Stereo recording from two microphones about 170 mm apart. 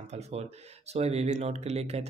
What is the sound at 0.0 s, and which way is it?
Speech, 40° right (ahead or behind).